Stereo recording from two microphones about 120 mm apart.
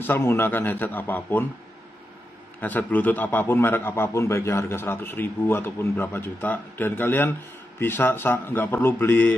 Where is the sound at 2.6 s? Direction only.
15° left (ahead or behind).